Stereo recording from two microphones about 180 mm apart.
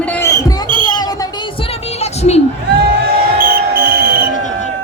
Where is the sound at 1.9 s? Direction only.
35° left (ahead or behind).